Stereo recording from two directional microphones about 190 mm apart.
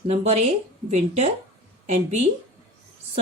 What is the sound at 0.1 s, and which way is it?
Speech, 35° right (ahead or behind).